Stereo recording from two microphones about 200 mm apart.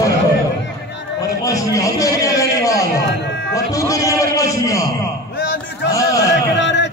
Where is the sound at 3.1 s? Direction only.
60° left (ahead or behind).